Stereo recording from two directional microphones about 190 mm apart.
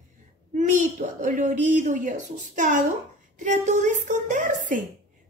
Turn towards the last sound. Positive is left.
turn(degrees=-45)  # may be behind; listen again after turning